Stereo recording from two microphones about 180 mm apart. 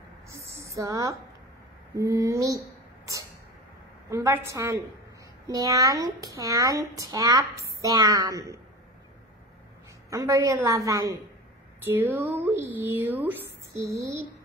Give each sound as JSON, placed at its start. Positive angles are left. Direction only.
{"t": 0.6, "sound": "a woman's voice", "side_deg": -15}
{"t": 4.1, "sound": "speech", "side_deg": -15}
{"t": 10.0, "sound": "speech", "side_deg": -15}